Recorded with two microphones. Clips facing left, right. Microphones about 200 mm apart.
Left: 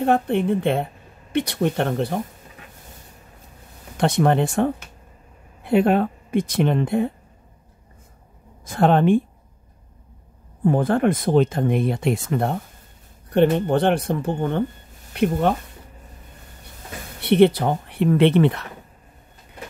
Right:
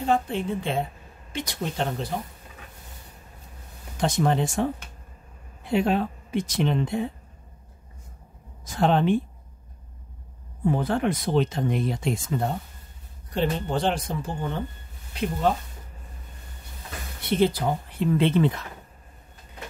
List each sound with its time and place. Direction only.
0.0 s speech: 60° left (ahead or behind)
3.9 s speech: 65° left (ahead or behind)
8.6 s speech: 55° left (ahead or behind)
10.6 s speech: 50° left (ahead or behind)
17.2 s speech: 65° left (ahead or behind)